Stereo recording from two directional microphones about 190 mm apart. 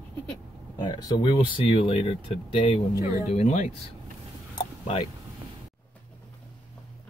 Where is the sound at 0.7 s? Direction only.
20° left (ahead or behind).